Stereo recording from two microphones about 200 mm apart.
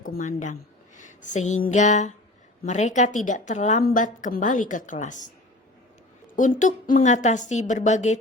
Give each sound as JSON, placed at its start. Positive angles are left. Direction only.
{"t": 0.0, "sound": "a woman's voice", "side_deg": 40}
{"t": 0.9, "sound": "a sound", "side_deg": 40}
{"t": 1.6, "sound": "a woman's voice", "side_deg": 35}
{"t": 6.3, "sound": "a woman's voice", "side_deg": 40}